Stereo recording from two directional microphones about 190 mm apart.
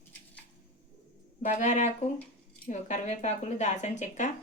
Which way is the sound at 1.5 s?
40° left (ahead or behind).